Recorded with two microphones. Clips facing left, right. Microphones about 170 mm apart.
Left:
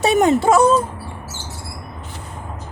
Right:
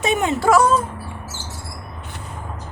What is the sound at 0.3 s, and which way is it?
Speech, 25° left (ahead or behind).